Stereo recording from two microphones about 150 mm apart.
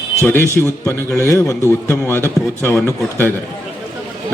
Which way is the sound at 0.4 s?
20° right (ahead or behind).